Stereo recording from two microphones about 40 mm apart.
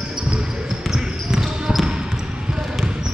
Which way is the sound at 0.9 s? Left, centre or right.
Centre.